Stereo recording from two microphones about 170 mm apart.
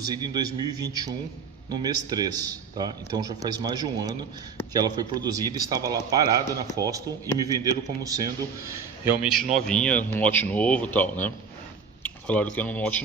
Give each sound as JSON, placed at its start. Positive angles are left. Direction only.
{"t": 0.1, "sound": "speech", "side_deg": -25}
{"t": 9.2, "sound": "speech", "side_deg": 0}